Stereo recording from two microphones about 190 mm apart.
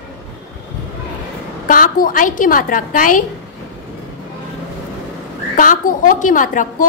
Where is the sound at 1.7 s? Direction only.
45° left (ahead or behind).